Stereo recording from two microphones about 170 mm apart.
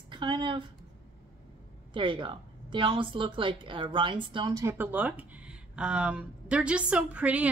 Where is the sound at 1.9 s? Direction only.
30° right (ahead or behind).